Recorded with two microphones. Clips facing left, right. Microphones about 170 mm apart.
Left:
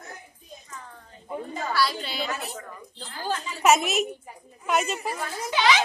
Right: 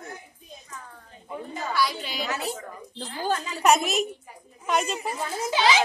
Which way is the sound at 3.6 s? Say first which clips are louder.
Left 1 dB; centre (ahead or behind).